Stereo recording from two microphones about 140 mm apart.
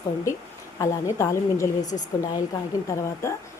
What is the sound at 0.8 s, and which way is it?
A woman's voice, 20° left (ahead or behind).